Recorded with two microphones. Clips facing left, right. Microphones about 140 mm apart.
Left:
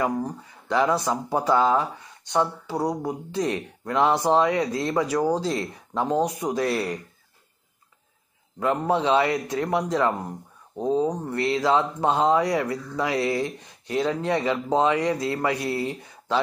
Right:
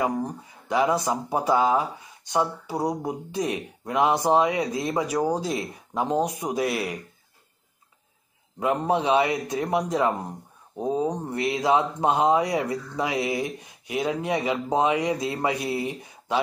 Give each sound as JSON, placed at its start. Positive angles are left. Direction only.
{"t": 0.0, "sound": "speech", "side_deg": -15}
{"t": 8.5, "sound": "speech", "side_deg": -15}